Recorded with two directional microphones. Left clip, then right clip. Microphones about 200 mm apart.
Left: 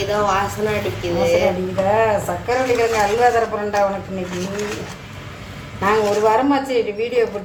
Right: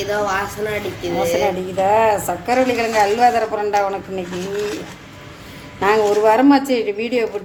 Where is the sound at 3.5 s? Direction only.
55° right (ahead or behind).